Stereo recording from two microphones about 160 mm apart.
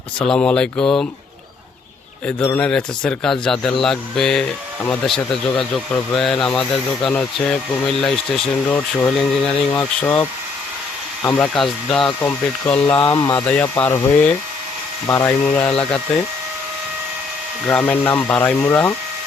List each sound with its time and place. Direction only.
0.2 s speech: 5° left (ahead or behind)
2.2 s speech: 10° left (ahead or behind)
13.1 s speech: 25° left (ahead or behind)
13.3 s speech: 10° left (ahead or behind)
15.0 s speech: 15° left (ahead or behind)
17.7 s speech: 10° left (ahead or behind)